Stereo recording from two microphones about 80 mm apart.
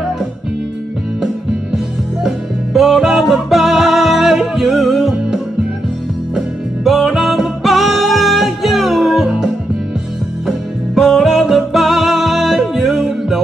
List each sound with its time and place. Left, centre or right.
2.2 s music: centre
11.0 s music: centre